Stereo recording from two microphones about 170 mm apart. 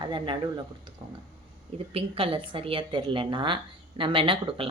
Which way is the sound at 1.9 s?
30° right (ahead or behind).